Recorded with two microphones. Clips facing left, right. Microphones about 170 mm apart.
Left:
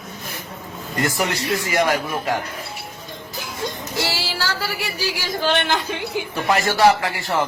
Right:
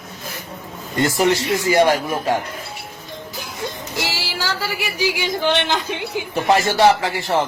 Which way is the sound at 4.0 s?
15° right (ahead or behind).